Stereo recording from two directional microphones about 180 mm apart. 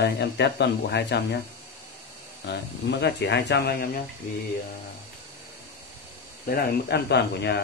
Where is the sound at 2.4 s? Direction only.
70° left (ahead or behind).